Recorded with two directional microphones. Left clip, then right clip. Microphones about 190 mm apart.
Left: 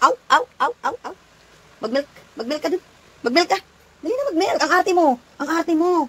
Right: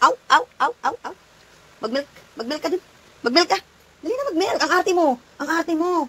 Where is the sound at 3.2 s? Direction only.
20° right (ahead or behind); by 6.1 s centre (ahead or behind).